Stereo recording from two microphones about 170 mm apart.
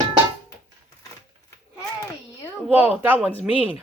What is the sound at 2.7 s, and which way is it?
Speech, 10° right (ahead or behind).